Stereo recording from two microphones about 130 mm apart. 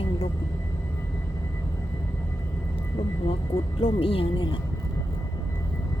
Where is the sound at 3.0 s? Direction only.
45° left (ahead or behind).